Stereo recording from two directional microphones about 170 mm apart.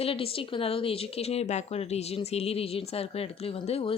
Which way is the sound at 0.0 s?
35° left (ahead or behind).